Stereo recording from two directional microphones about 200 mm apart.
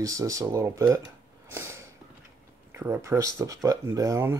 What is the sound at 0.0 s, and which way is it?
Speech, 15° right (ahead or behind).